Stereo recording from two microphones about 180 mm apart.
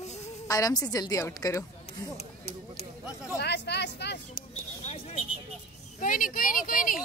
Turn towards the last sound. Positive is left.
turn(degrees=50)  # may be behind; listen again after turning